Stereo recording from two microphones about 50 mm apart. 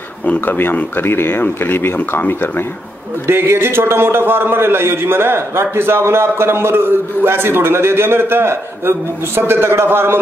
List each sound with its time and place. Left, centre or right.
0.3 s speech: left
0.9 s speech: left
3.3 s a man's voice: right